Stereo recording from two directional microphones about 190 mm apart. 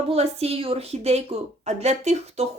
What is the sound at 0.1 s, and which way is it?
Speech, 35° right (ahead or behind).